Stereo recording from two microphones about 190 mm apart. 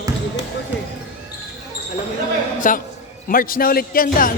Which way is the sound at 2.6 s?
45° left (ahead or behind).